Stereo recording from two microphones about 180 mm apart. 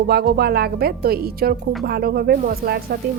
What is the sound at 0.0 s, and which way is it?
Speech, 60° right (ahead or behind).